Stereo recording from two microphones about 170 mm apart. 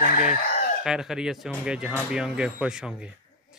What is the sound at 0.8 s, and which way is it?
Speech, 5° right (ahead or behind).